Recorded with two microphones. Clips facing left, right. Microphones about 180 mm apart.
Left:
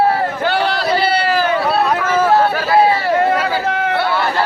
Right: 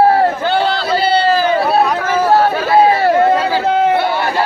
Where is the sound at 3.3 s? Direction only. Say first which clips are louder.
Right 4 dB; 25° right (ahead or behind).